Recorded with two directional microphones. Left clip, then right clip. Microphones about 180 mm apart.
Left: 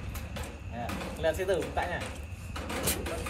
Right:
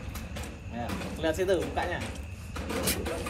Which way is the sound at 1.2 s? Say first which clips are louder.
Right 2 dB; 35° right (ahead or behind).